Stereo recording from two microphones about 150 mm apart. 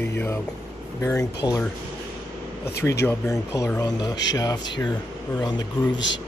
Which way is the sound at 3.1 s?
20° left (ahead or behind).